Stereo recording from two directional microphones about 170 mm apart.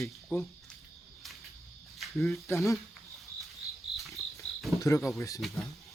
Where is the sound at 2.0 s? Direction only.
Centre (ahead or behind).